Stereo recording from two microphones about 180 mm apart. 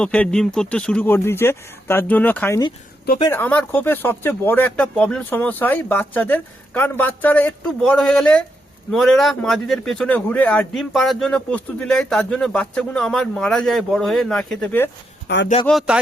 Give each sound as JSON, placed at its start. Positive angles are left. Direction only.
{"t": 0.0, "sound": "speech", "side_deg": 5}
{"t": 15.3, "sound": "a man's voice", "side_deg": 65}
{"t": 15.6, "sound": "speech", "side_deg": 0}